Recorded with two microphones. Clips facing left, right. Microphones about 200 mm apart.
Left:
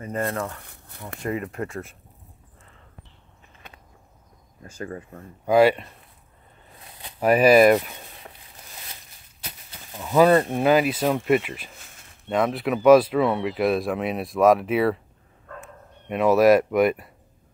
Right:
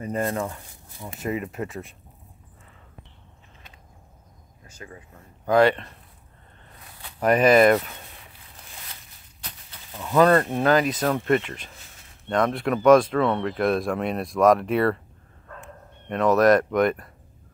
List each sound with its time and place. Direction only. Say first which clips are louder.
0.6 s a sound: even; 65° left (ahead or behind)
1.3 s speech: left 1 dB; 20° right (ahead or behind)
4.6 s speech: left 9 dB; 50° left (ahead or behind)
5.4 s speech: left 1 dB; 10° left (ahead or behind)
7.2 s speech: left 1 dB; 5° left (ahead or behind)
9.4 s speech: left 2 dB; 10° left (ahead or behind)
16.1 s speech: left 1 dB; 5° left (ahead or behind)